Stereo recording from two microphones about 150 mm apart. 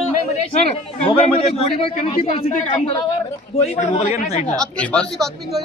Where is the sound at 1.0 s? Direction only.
35° left (ahead or behind).